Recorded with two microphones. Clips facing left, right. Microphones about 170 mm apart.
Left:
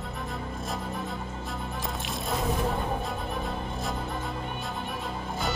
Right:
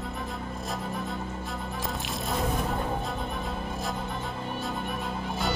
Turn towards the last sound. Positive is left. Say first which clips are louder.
# right 1 dB
turn(degrees=0)  # may be behind; listen again after turning